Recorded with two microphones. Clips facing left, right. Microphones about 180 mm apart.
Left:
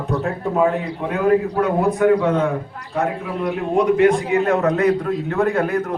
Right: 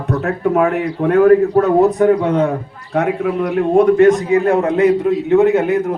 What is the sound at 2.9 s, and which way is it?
Speech, 70° right (ahead or behind).